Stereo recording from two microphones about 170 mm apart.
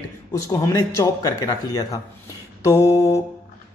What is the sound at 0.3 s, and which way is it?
A man's voice, 20° left (ahead or behind).